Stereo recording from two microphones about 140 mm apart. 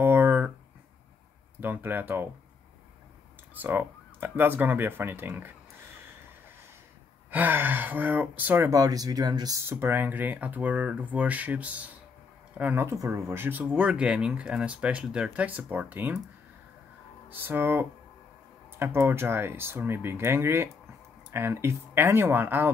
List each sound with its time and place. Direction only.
0.0 s a sound: 15° right (ahead or behind)
1.6 s speech: 15° right (ahead or behind)
3.6 s speech: 15° right (ahead or behind)
7.2 s speech: 15° right (ahead or behind)
8.6 s speech: 25° right (ahead or behind)
9.7 s speech: 15° right (ahead or behind)
17.3 s speech: 15° right (ahead or behind)